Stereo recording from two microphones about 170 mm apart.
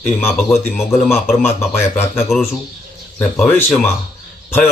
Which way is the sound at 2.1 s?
Centre (ahead or behind).